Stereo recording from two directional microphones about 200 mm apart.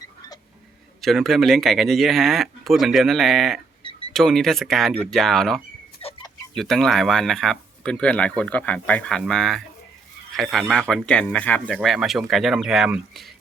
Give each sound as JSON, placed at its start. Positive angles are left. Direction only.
{"t": 1.0, "sound": "speech", "side_deg": 0}
{"t": 6.0, "sound": "a sound", "side_deg": 25}
{"t": 6.5, "sound": "speech", "side_deg": 0}